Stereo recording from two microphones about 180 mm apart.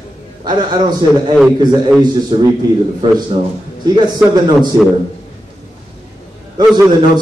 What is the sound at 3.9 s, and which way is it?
Speech, 20° right (ahead or behind).